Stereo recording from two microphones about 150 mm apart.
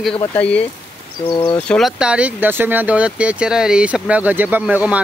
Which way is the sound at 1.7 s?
Centre (ahead or behind).